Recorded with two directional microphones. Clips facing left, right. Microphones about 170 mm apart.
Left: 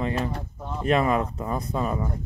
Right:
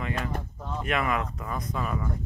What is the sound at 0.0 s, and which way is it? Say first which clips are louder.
Speech: left 4 dB; 30° left (ahead or behind).